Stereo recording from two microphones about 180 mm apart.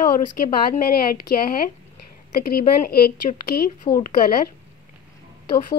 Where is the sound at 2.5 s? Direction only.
60° left (ahead or behind).